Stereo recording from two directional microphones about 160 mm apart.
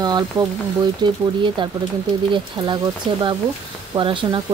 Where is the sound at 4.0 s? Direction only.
30° right (ahead or behind).